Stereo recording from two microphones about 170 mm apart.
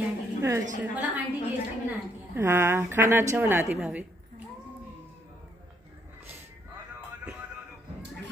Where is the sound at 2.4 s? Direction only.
15° right (ahead or behind).